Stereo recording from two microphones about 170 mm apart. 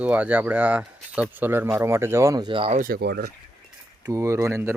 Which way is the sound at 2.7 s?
55° right (ahead or behind).